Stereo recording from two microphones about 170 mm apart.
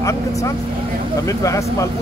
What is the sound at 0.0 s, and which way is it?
Speech, 20° left (ahead or behind).